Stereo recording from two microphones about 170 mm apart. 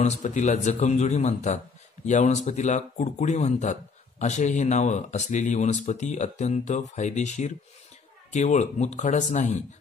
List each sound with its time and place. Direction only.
0.0 s speech: 40° left (ahead or behind)